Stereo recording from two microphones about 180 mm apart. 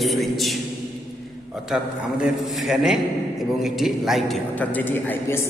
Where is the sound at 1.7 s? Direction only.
5° right (ahead or behind).